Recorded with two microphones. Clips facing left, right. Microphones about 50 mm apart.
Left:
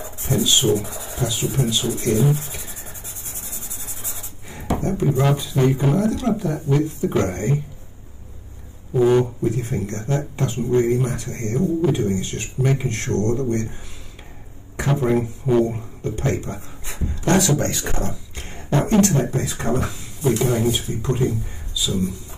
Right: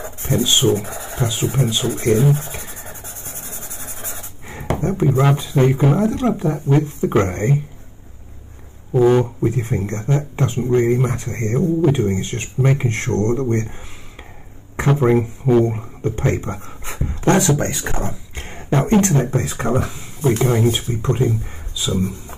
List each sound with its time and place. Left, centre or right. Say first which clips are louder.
0.3 s speech: right 2 dB; right
2.3 s a sound: right 4 dB; right
3.3 s writing: right 3 dB; right
5.8 s speech: right 3 dB; right
9.1 s speech: right 1 dB; right
14.8 s speech: right 4 dB; right
18.3 s a sound: right 5 dB; right
18.8 s speech: right 1 dB; right
19.9 s a sound: right 3 dB; right
20.2 s speech: right 2 dB; right
20.6 s speech: right 3 dB; right